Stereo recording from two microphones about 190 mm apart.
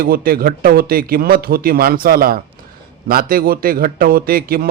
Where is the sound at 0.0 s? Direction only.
50° right (ahead or behind).